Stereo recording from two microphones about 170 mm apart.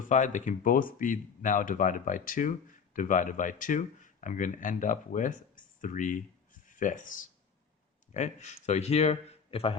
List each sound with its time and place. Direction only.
0.0 s speech: 45° left (ahead or behind)